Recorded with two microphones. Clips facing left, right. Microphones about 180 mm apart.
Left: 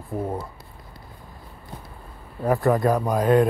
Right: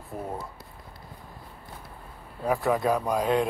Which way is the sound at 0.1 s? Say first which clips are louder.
Left 7 dB; 20° left (ahead or behind).